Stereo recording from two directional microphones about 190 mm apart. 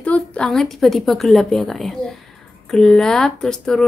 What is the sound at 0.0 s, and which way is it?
A woman's voice, 5° left (ahead or behind).